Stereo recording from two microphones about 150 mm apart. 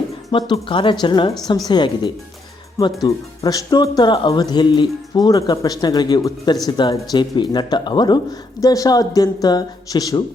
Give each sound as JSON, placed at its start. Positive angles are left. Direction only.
{"t": 0.3, "sound": "speech", "side_deg": 30}